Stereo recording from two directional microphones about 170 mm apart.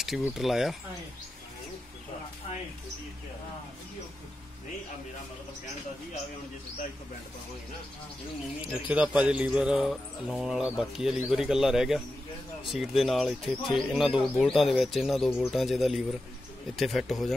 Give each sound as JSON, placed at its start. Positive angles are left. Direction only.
{"t": 0.3, "sound": "speech", "side_deg": 0}
{"t": 8.5, "sound": "speech", "side_deg": -5}